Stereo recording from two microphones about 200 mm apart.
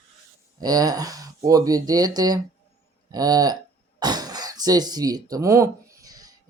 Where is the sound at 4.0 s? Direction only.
20° right (ahead or behind).